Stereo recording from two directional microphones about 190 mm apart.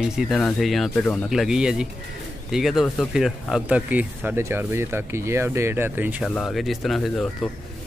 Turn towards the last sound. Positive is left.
turn(degrees=0)  # may be behind; listen again after turning